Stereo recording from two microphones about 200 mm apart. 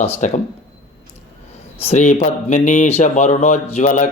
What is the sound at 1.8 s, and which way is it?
Speech, 35° left (ahead or behind).